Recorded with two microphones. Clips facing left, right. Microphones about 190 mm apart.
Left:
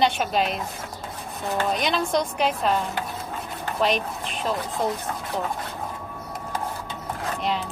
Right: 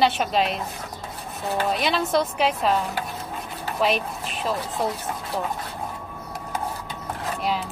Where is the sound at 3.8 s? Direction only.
5° right (ahead or behind).